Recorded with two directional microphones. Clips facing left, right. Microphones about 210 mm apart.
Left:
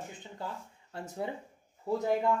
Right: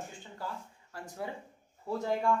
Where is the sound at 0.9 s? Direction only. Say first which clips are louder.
Left 3 dB; 25° left (ahead or behind).